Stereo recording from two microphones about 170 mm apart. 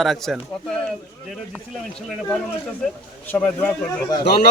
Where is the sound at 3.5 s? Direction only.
20° left (ahead or behind).